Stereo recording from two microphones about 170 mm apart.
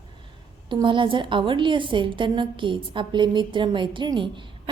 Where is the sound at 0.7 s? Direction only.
30° right (ahead or behind).